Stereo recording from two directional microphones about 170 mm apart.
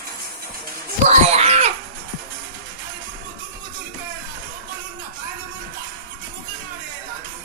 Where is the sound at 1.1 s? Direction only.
40° right (ahead or behind).